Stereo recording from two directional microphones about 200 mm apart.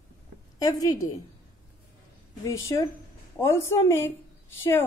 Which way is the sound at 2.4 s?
15° left (ahead or behind).